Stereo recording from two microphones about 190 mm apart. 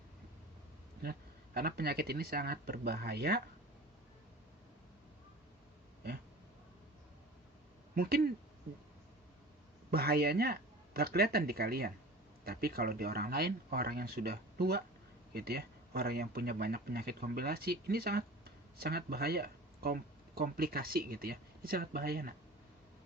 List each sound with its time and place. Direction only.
1.5 s speech: 55° right (ahead or behind)
7.9 s speech: 50° right (ahead or behind)
9.9 s speech: 55° right (ahead or behind)